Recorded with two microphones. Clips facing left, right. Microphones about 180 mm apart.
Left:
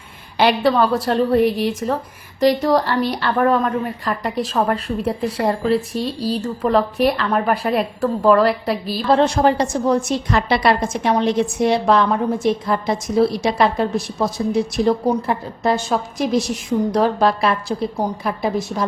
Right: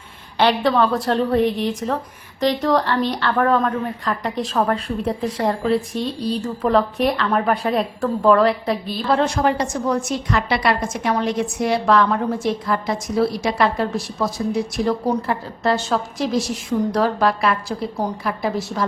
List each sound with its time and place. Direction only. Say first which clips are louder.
0.3 s a woman's voice: left 1 dB; 10° left (ahead or behind)
9.0 s a woman's voice: left 3 dB; 30° left (ahead or behind)